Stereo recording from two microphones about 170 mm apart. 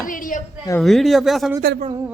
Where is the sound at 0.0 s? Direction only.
50° left (ahead or behind).